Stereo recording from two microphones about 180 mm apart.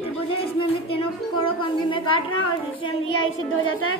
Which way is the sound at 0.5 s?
30° left (ahead or behind).